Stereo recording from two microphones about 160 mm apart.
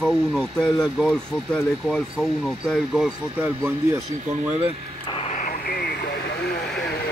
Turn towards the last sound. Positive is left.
turn(degrees=85)